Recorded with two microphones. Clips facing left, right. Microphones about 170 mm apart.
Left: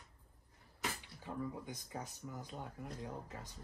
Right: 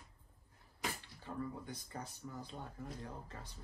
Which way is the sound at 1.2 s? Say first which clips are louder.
Left 1 dB; 15° left (ahead or behind).